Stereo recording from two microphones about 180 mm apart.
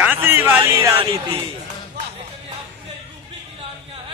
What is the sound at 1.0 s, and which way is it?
Speech, 30° right (ahead or behind).